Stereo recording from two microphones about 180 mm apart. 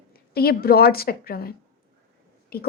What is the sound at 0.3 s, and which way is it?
A woman's voice, 55° left (ahead or behind).